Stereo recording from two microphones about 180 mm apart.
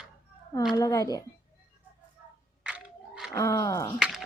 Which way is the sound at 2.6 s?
5° right (ahead or behind).